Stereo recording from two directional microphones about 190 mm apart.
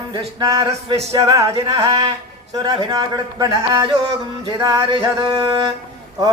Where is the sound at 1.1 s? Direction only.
20° right (ahead or behind).